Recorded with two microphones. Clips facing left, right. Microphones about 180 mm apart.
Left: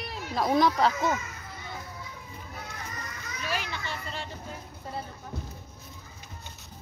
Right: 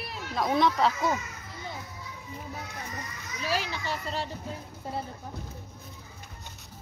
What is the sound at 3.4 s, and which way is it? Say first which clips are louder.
Children playing: right 3 dB; 35° right (ahead or behind).